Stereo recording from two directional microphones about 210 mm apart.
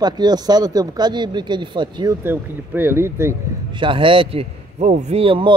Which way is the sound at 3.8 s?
25° right (ahead or behind).